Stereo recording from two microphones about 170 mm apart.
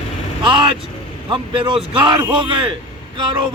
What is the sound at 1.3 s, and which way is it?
A man's voice, 30° right (ahead or behind).